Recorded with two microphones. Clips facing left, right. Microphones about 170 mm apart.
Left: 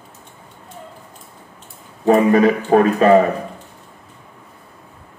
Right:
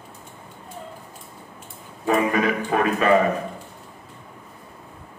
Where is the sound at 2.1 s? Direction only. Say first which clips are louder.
Left 8 dB; 35° left (ahead or behind).